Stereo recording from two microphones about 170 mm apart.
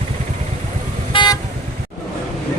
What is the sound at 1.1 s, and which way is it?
Vehicle, 25° left (ahead or behind).